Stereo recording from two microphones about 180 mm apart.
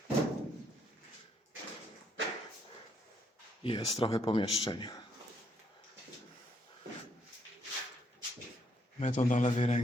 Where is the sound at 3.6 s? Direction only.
30° left (ahead or behind).